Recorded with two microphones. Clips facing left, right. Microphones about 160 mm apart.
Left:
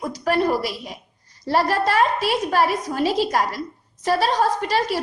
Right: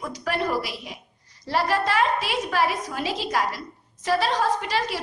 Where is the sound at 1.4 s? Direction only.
40° left (ahead or behind).